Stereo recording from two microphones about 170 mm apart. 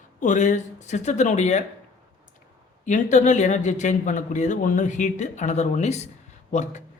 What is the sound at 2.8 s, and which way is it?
A man's voice, 45° left (ahead or behind).